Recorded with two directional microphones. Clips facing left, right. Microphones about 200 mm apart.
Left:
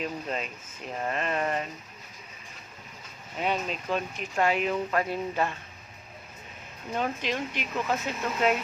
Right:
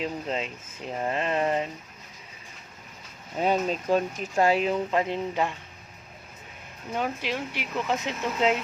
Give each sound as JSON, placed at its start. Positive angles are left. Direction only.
{"t": 0.0, "sound": "speech", "side_deg": -25}
{"t": 3.3, "sound": "speech", "side_deg": -40}
{"t": 6.9, "sound": "speech", "side_deg": -10}